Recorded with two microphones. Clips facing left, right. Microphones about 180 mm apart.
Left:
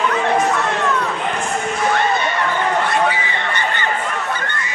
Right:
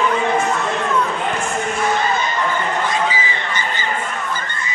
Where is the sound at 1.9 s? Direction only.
70° left (ahead or behind).